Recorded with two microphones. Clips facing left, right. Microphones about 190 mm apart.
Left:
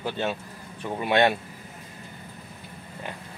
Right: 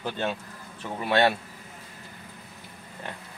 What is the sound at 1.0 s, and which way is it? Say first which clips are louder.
Speech: left 1 dB; 20° left (ahead or behind).